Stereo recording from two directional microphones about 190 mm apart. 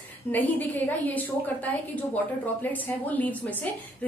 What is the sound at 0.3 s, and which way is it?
A woman's voice, 10° left (ahead or behind).